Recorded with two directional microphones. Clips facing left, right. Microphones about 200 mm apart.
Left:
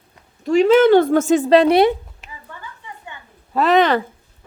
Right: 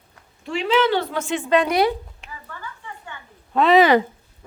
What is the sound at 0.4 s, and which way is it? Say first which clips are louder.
Speech: left 8 dB; 45° left (ahead or behind).